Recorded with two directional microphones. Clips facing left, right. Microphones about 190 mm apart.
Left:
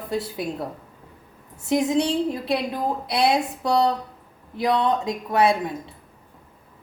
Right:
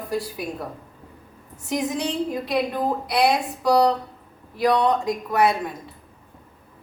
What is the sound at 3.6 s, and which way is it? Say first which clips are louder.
A woman's voice: right 4 dB; 25° left (ahead or behind).